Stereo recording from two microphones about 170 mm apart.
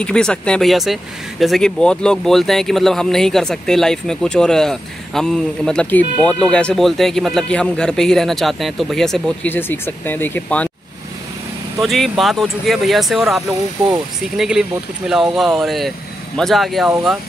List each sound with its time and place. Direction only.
0.0 s a man's voice: 5° left (ahead or behind)
11.8 s a man's voice: centre (ahead or behind)
13.5 s speech: 20° right (ahead or behind)
14.3 s a man's voice: 5° right (ahead or behind)